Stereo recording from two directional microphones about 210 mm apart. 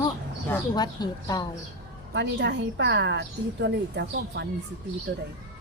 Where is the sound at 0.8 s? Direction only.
20° left (ahead or behind).